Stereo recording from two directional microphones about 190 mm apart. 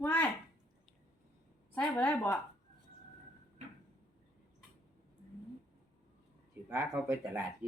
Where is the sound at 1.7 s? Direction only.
5° left (ahead or behind).